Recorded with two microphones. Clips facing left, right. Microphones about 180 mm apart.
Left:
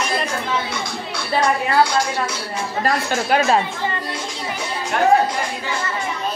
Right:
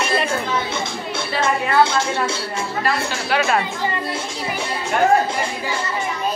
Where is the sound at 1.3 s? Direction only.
25° right (ahead or behind).